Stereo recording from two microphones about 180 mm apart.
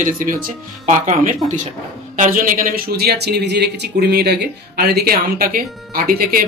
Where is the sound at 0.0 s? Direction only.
50° right (ahead or behind).